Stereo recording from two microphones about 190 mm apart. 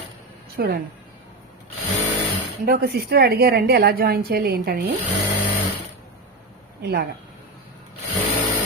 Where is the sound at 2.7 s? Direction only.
50° right (ahead or behind).